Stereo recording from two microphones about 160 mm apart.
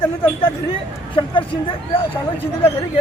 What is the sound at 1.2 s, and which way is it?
Speech, 30° left (ahead or behind).